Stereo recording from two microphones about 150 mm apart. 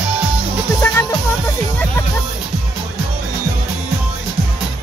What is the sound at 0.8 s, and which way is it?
Music, 15° left (ahead or behind).